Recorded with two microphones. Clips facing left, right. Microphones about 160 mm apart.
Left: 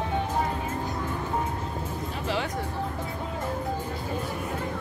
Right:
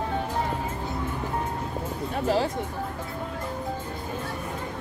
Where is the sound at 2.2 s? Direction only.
40° right (ahead or behind).